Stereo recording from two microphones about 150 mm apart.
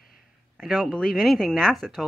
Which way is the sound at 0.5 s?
5° left (ahead or behind).